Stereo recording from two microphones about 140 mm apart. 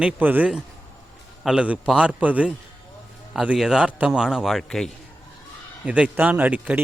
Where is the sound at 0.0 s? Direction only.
10° right (ahead or behind).